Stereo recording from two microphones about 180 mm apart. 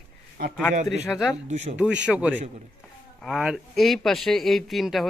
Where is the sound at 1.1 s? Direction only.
Centre (ahead or behind).